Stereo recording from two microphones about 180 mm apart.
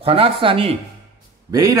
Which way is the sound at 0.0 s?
30° right (ahead or behind).